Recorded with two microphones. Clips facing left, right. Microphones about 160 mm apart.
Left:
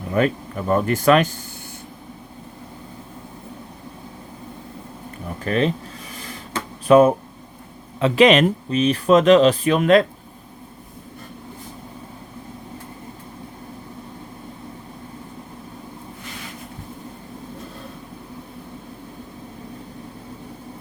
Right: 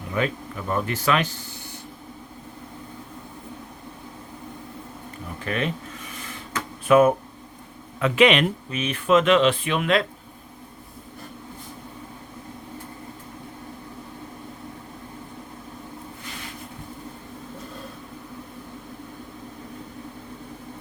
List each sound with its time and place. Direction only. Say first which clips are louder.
0.1 s speech: left 6 dB; 45° left (ahead or behind)
5.4 s speech: left 7 dB; 35° left (ahead or behind)
6.1 s a sound: left 3 dB; 35° left (ahead or behind)
7.9 s speech: left 4 dB; 30° left (ahead or behind)